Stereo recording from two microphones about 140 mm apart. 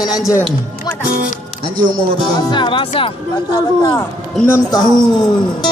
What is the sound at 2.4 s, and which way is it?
A man's voice, 35° left (ahead or behind).